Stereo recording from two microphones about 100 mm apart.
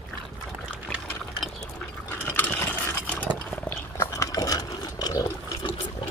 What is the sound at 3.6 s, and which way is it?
Pig, 30° left (ahead or behind).